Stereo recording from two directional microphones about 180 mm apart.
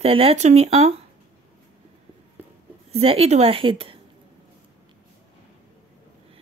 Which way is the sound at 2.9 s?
35° right (ahead or behind).